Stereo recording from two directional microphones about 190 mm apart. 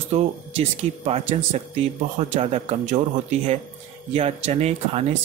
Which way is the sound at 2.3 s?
35° right (ahead or behind).